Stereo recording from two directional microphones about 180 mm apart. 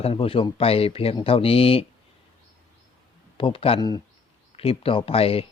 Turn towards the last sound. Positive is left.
turn(degrees=30)  # may be behind; listen again after turning